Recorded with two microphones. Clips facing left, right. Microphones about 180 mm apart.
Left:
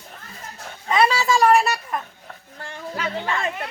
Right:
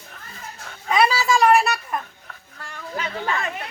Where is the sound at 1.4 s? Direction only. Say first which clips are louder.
Even; 10° right (ahead or behind).